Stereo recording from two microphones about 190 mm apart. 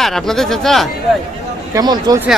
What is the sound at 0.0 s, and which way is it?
Speech, centre (ahead or behind).